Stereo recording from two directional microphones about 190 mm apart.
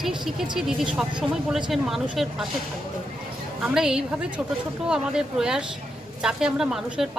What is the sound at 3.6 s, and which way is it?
Speech, centre (ahead or behind).